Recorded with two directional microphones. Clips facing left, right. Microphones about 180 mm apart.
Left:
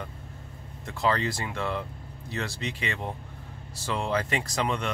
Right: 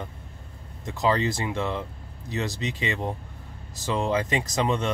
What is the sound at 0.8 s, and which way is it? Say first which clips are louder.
Speech: right 3 dB; 20° right (ahead or behind).